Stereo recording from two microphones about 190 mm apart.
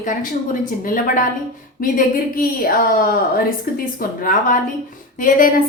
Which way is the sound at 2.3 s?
50° left (ahead or behind).